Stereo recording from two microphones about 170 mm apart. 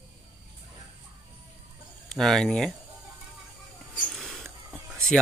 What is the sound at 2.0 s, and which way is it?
Speech, centre (ahead or behind).